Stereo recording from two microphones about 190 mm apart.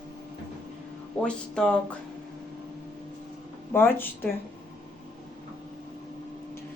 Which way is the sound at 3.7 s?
10° left (ahead or behind).